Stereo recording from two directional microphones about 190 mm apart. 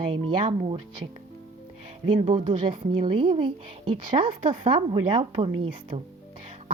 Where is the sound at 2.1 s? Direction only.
30° right (ahead or behind).